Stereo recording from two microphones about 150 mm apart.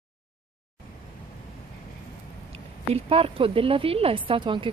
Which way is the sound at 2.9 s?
40° right (ahead or behind).